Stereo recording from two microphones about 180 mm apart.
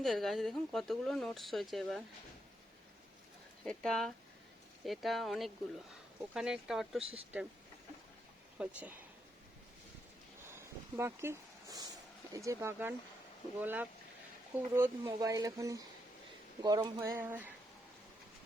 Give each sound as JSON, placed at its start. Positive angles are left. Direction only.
{"t": 0.0, "sound": "speech", "side_deg": 0}
{"t": 3.6, "sound": "speech", "side_deg": 5}
{"t": 8.5, "sound": "speech", "side_deg": -10}
{"t": 10.4, "sound": "a sound", "side_deg": -15}
{"t": 12.3, "sound": "speech", "side_deg": -20}